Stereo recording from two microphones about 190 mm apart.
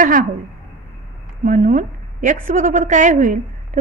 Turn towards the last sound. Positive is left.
turn(degrees=-40)  # may be behind; listen again after turning